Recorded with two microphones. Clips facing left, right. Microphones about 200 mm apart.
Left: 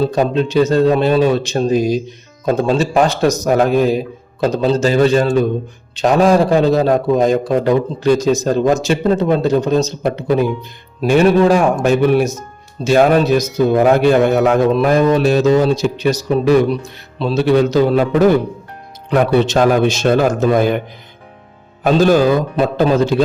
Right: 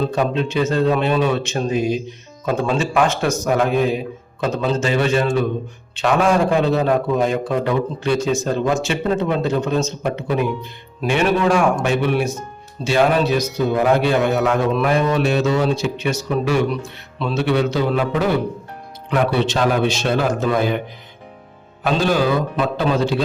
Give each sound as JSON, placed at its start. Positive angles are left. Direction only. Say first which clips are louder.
{"t": 0.0, "sound": "a man's voice", "louder": "left 4 dB", "side_deg": 40}
{"t": 14.7, "sound": "a man's voice", "louder": "left 5 dB", "side_deg": 35}
{"t": 21.8, "sound": "speech", "louder": "left 6 dB", "side_deg": 45}